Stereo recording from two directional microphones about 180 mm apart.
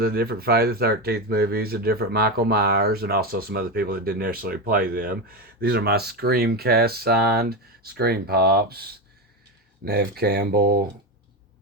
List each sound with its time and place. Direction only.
0.0 s speech: 60° right (ahead or behind)